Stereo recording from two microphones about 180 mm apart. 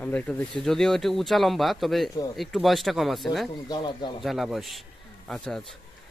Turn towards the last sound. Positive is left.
turn(degrees=0)  # may be behind; listen again after turning